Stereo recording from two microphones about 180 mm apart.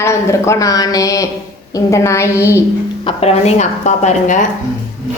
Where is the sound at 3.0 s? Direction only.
30° left (ahead or behind).